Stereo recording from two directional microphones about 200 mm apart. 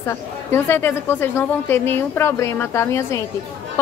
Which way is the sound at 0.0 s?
10° left (ahead or behind).